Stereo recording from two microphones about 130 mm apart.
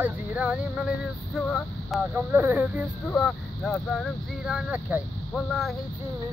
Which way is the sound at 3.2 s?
Centre (ahead or behind).